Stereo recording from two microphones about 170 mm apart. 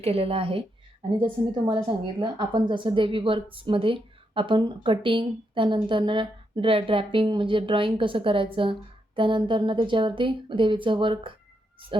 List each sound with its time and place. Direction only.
0.0 s a woman's voice: 35° right (ahead or behind)